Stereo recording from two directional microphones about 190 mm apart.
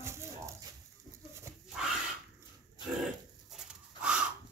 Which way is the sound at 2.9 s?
Centre (ahead or behind).